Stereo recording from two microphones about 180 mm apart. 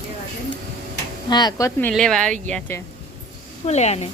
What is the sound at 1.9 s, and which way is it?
Speech, 5° left (ahead or behind).